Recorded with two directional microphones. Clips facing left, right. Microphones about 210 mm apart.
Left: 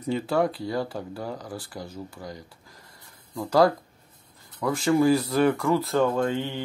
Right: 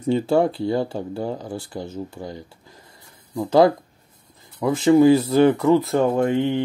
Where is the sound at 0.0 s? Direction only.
25° right (ahead or behind).